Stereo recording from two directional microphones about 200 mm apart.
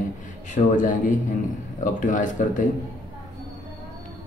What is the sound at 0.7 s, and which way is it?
A man's voice, 40° left (ahead or behind).